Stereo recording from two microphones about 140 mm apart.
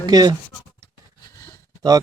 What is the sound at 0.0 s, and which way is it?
Speech, 30° right (ahead or behind).